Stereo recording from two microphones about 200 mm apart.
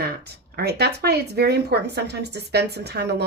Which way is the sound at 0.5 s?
55° right (ahead or behind).